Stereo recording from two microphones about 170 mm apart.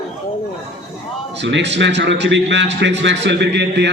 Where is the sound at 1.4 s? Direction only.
90° right.